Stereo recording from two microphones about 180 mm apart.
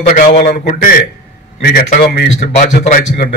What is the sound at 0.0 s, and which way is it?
Speech, 45° left (ahead or behind).